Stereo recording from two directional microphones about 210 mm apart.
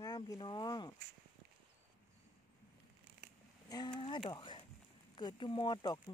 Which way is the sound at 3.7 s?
20° left (ahead or behind).